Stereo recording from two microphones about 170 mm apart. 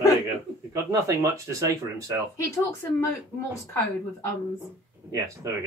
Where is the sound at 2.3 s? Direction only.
15° left (ahead or behind).